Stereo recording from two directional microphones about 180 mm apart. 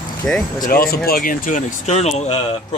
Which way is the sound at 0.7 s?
55° left (ahead or behind).